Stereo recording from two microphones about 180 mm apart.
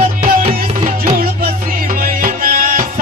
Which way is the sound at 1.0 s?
50° right (ahead or behind).